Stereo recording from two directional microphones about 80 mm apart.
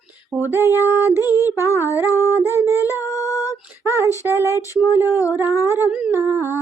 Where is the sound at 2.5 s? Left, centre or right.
Right.